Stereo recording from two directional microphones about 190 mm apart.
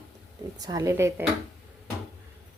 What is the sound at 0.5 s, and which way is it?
Speech, 20° right (ahead or behind).